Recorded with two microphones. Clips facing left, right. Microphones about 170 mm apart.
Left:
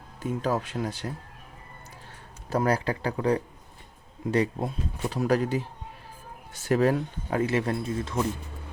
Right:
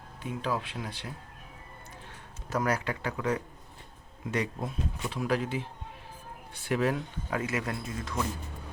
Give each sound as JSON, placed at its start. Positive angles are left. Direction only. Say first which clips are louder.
{"t": 0.2, "sound": "speech", "louder": "left 5 dB", "side_deg": 40}
{"t": 2.5, "sound": "speech", "louder": "left 4 dB", "side_deg": 30}